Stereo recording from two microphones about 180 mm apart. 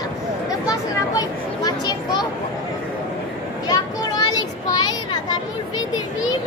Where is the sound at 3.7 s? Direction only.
20° left (ahead or behind).